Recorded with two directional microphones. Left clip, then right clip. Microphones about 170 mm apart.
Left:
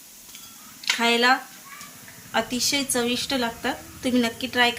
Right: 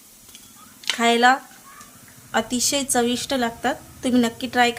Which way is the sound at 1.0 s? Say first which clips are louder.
Right 4 dB; 55° right (ahead or behind).